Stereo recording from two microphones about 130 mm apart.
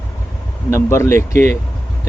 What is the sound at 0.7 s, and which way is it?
Speech, 20° left (ahead or behind).